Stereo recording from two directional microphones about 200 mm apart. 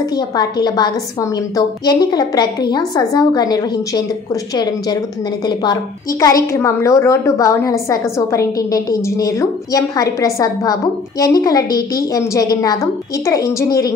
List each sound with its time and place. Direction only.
0.1 s a woman's voice: 20° left (ahead or behind)
5.5 s a woman's voice: 20° left (ahead or behind)